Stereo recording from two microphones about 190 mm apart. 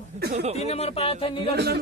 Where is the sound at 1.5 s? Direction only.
60° right (ahead or behind).